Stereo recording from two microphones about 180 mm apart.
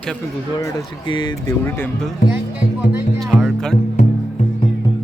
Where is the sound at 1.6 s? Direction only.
10° left (ahead or behind).